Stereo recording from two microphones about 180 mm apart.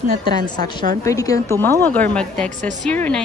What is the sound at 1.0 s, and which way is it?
A woman's voice, 20° left (ahead or behind).